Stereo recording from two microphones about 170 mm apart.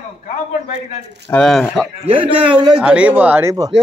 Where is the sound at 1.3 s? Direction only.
5° left (ahead or behind).